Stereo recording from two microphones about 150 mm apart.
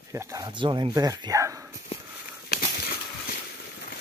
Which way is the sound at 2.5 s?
90° left.